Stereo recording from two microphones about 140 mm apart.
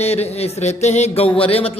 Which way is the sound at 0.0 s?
50° left (ahead or behind).